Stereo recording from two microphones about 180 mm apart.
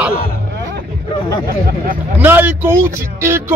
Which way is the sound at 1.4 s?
50° right (ahead or behind).